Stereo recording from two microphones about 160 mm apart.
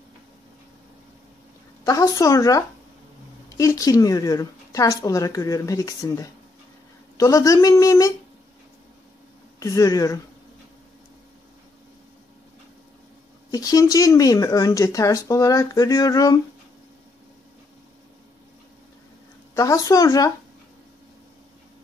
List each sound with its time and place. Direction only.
1.9 s speech: 20° left (ahead or behind)
9.6 s speech: 20° left (ahead or behind)
13.5 s speech: 20° left (ahead or behind)
19.5 s speech: 20° left (ahead or behind)